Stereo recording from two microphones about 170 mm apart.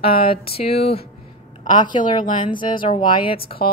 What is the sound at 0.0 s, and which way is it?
Speech, 65° left (ahead or behind).